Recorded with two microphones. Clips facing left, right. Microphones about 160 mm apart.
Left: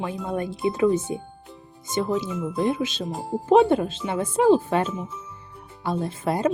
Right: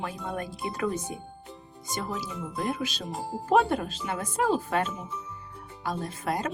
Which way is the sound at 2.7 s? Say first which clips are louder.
Left 6 dB; 25° left (ahead or behind).